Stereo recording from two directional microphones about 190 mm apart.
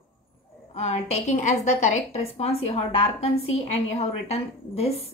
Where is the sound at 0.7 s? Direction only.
35° left (ahead or behind).